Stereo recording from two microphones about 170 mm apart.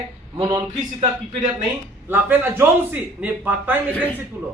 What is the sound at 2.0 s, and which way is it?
Speech, 10° right (ahead or behind).